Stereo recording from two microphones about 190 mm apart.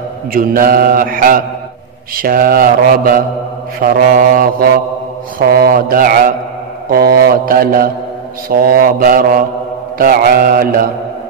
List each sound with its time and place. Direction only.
0.3 s mantra: 50° right (ahead or behind)